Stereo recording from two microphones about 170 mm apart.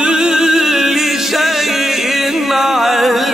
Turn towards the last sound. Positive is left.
turn(degrees=0)  # may be behind; listen again after turning